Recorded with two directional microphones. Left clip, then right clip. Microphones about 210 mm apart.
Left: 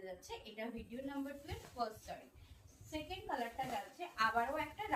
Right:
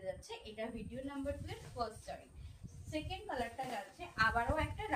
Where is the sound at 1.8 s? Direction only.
15° right (ahead or behind).